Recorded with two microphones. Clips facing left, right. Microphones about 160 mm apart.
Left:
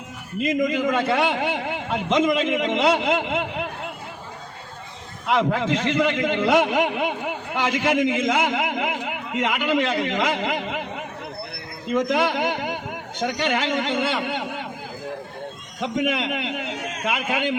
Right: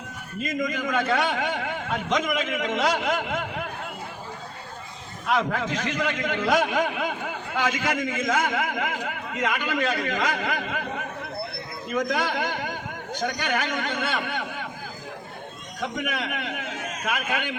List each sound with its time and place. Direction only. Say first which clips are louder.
0.4 s a man's voice: left 6 dB; 25° left (ahead or behind)
5.2 s a man's voice: left 4 dB; 20° left (ahead or behind)
11.9 s a man's voice: left 5 dB; 25° left (ahead or behind)
15.8 s a man's voice: left 6 dB; 25° left (ahead or behind)